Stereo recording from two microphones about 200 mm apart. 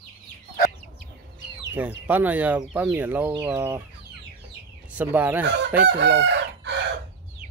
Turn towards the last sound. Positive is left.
turn(degrees=-60)  # may be behind; listen again after turning